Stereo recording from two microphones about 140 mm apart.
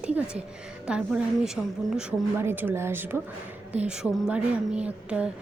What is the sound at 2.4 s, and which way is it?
A woman's voice, 15° right (ahead or behind).